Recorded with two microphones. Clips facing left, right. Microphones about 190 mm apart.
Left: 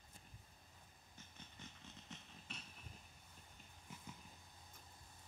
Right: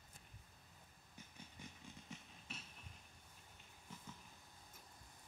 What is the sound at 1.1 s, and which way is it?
Vehicle, 10° right (ahead or behind).